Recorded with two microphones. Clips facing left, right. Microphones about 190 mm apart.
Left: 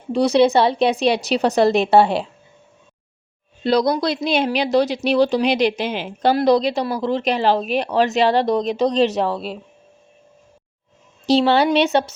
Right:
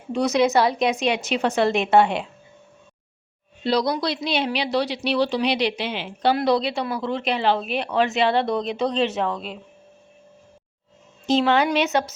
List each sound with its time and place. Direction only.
0.1 s speech: 30° left (ahead or behind)
3.6 s speech: 50° left (ahead or behind)
11.3 s speech: 35° left (ahead or behind)